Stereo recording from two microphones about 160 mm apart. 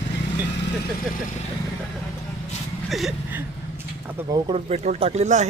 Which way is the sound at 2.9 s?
Centre (ahead or behind).